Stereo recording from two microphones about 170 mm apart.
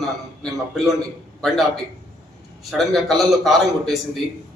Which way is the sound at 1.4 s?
Centre (ahead or behind).